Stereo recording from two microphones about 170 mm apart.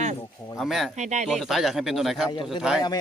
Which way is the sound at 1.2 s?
Centre (ahead or behind).